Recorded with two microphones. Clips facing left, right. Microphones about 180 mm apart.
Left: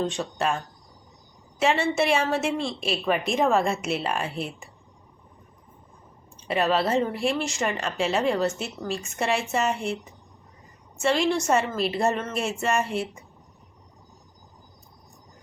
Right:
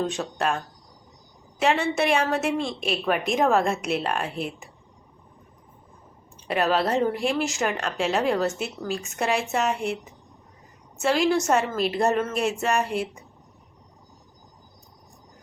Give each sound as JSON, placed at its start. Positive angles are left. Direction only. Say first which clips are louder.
{"t": 0.0, "sound": "a woman's voice", "louder": "even", "side_deg": 0}
{"t": 6.5, "sound": "a woman's voice", "louder": "even", "side_deg": 0}